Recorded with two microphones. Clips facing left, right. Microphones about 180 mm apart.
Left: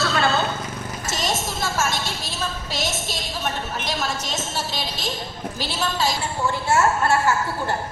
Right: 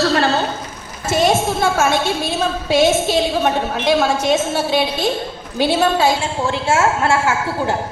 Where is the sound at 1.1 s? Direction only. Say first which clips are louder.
Right 12 dB; 60° right (ahead or behind).